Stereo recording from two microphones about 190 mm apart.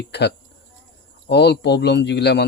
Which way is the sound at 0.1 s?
60° left (ahead or behind).